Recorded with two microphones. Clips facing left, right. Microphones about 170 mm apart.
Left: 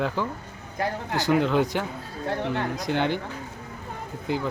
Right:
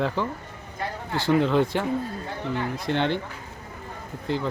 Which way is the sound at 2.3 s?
65° left (ahead or behind).